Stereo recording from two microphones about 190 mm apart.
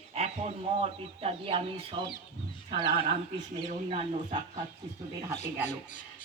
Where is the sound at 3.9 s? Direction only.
30° right (ahead or behind).